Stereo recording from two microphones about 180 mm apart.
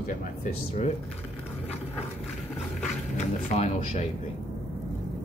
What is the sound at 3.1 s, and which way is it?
Speech, 40° left (ahead or behind).